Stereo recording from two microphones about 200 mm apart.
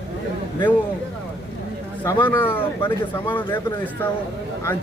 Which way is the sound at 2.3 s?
10° left (ahead or behind).